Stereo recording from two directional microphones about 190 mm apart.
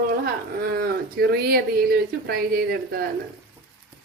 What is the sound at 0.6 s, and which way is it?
Speech, 55° right (ahead or behind).